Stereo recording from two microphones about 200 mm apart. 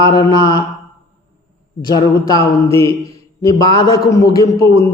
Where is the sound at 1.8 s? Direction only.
20° left (ahead or behind).